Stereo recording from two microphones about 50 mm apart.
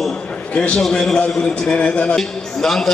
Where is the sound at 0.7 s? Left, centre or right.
Centre.